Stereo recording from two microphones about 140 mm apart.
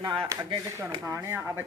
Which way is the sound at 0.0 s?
35° right (ahead or behind).